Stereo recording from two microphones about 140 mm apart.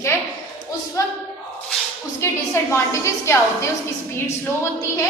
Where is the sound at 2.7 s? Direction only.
20° left (ahead or behind).